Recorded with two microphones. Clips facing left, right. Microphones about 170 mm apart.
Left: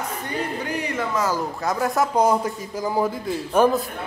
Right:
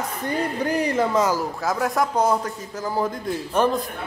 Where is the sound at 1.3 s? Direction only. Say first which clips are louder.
Right 1 dB; 5° right (ahead or behind).